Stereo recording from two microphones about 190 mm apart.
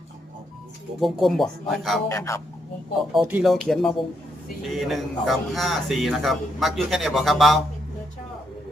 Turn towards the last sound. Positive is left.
turn(degrees=0)  # may be behind; listen again after turning